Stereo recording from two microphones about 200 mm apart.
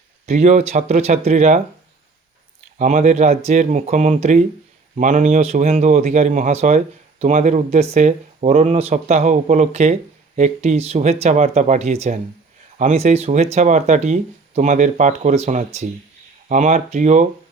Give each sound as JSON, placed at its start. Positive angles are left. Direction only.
{"t": 0.3, "sound": "speech", "side_deg": -35}
{"t": 2.7, "sound": "speech", "side_deg": -35}